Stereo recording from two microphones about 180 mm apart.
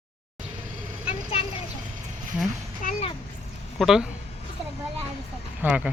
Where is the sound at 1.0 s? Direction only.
30° left (ahead or behind).